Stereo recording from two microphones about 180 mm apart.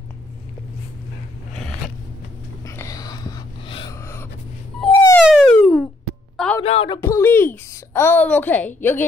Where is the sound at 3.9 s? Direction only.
15° left (ahead or behind).